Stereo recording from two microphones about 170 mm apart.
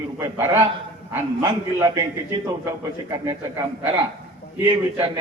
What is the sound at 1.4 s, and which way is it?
Speech, 20° right (ahead or behind).